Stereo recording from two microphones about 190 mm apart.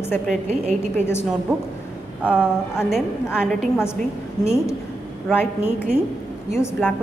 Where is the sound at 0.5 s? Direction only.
35° right (ahead or behind).